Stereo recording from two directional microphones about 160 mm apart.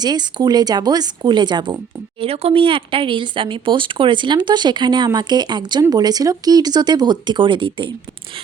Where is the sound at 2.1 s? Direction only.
40° right (ahead or behind).